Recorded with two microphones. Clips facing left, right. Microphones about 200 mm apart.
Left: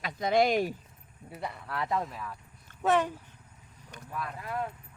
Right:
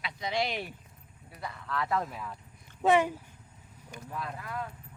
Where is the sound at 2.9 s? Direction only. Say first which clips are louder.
Right 2 dB; 10° right (ahead or behind).